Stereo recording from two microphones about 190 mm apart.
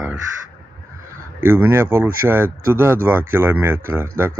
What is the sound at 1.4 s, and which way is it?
Speech, 10° right (ahead or behind).